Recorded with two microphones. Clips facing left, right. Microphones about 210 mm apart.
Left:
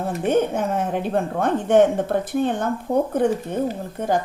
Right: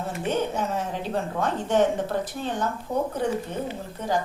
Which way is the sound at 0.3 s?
55° left (ahead or behind).